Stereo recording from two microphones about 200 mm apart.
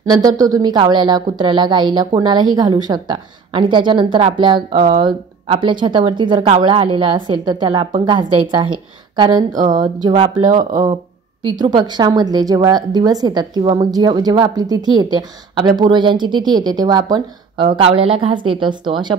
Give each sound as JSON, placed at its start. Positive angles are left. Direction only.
{"t": 0.0, "sound": "a woman's voice", "side_deg": -20}